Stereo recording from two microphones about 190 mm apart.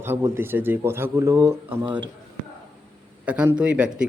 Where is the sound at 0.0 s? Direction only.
10° right (ahead or behind).